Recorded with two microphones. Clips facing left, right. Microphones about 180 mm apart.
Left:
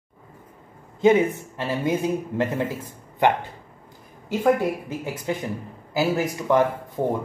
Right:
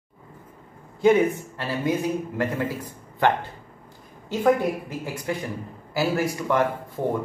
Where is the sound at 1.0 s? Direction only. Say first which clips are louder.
Left 1 dB; 20° left (ahead or behind).